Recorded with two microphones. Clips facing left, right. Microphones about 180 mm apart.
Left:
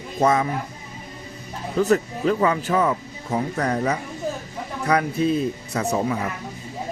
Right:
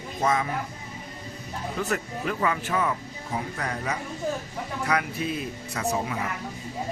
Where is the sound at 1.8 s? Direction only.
35° left (ahead or behind).